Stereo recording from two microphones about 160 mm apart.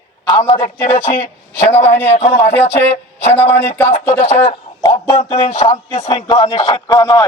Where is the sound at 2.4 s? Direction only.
15° left (ahead or behind).